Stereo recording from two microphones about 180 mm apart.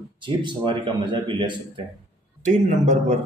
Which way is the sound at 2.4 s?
40° right (ahead or behind).